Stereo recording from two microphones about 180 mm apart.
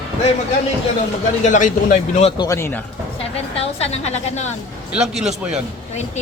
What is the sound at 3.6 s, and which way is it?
Speech, 35° left (ahead or behind).